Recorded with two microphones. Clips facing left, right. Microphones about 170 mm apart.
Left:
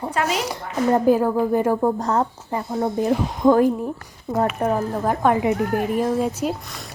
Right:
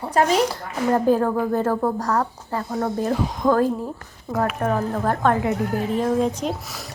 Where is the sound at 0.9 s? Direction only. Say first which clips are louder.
Left 1 dB; 10° left (ahead or behind).